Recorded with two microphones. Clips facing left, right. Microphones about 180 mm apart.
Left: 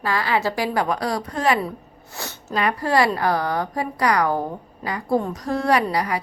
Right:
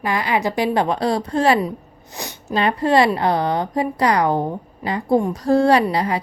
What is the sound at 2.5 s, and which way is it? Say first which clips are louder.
A woman's voice: right 4 dB; 25° right (ahead or behind).